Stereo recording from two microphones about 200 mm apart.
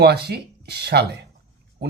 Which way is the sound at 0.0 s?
55° right (ahead or behind).